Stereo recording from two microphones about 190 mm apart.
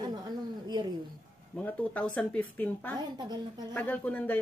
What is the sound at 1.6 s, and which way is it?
Speech, 10° left (ahead or behind).